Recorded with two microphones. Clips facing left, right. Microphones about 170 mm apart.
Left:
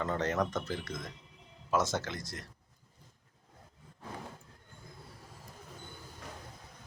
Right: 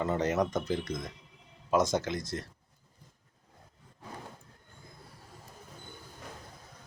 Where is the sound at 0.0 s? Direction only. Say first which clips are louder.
Right 3 dB; 10° right (ahead or behind).